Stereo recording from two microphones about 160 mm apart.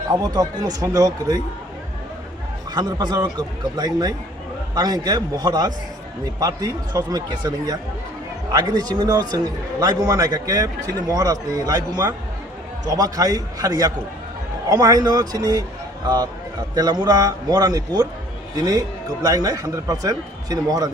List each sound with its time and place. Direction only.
0.1 s a man's voice: 25° right (ahead or behind)
2.7 s a man's voice: 25° right (ahead or behind)